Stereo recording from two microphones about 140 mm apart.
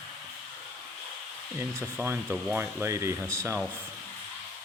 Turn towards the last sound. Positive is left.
turn(degrees=-20)  # may be behind; listen again after turning